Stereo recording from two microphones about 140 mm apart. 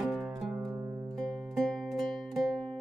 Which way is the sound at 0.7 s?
15° right (ahead or behind).